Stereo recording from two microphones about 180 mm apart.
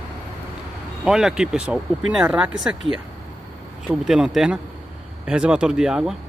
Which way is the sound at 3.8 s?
5° right (ahead or behind).